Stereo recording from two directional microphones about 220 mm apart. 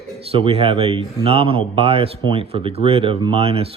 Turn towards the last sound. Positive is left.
turn(degrees=-25)  # may be behind; listen again after turning